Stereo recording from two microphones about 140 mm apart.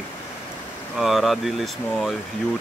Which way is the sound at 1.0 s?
Centre (ahead or behind).